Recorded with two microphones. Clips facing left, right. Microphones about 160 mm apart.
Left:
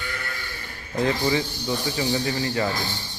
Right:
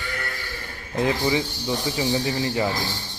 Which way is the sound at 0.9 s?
15° right (ahead or behind).